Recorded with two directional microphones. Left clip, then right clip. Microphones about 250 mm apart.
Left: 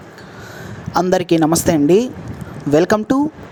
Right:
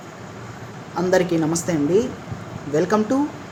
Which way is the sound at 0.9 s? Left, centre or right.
Left.